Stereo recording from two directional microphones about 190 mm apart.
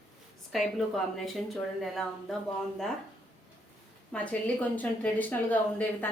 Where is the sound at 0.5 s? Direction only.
Centre (ahead or behind).